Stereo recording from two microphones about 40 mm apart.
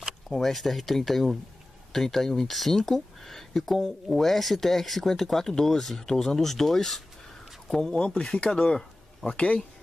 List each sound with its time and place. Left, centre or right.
0.3 s speech: centre
7.9 s speech: left